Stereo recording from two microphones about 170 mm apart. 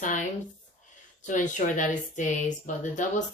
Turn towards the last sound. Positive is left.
turn(degrees=45)  # may be behind; listen again after turning